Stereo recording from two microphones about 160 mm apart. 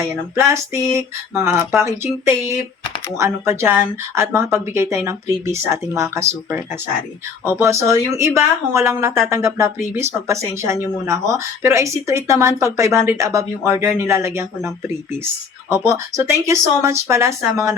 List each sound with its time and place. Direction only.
0.3 s speech: 15° right (ahead or behind)
3.2 s speech: 15° right (ahead or behind)